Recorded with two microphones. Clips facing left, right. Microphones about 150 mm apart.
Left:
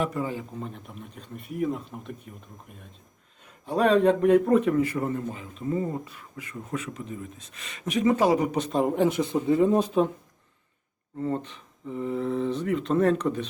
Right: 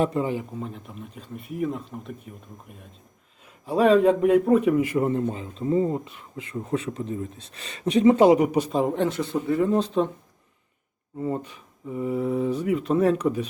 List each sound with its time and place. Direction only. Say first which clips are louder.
0.0 s speech: right 5 dB; 25° right (ahead or behind)
0.6 s speech: right 2 dB; centre (ahead or behind)
3.7 s speech: right 3 dB; 5° right (ahead or behind)
4.8 s speech: right 3 dB; 20° right (ahead or behind)
8.5 s speech: right 1 dB; 5° right (ahead or behind)
11.2 s speech: right 1 dB; 10° right (ahead or behind)